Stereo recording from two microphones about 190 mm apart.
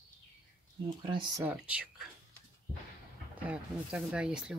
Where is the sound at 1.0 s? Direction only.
25° right (ahead or behind).